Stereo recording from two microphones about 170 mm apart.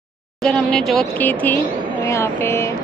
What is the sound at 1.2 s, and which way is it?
Speech, 10° left (ahead or behind).